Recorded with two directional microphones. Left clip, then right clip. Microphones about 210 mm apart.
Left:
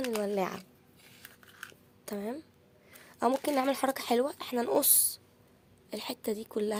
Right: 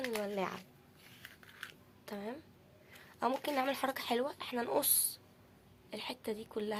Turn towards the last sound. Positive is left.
turn(degrees=55)  # may be behind; listen again after turning